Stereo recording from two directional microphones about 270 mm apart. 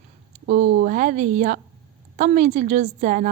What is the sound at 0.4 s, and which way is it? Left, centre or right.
Speech, right.